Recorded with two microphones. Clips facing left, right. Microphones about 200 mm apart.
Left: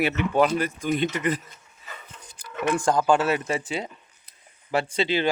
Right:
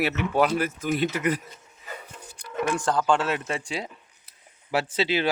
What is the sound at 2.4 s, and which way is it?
Speech, 10° left (ahead or behind).